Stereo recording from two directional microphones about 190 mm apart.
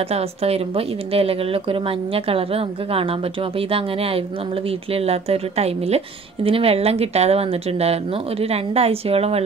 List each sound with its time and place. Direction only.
0.1 s a woman's voice: 30° right (ahead or behind)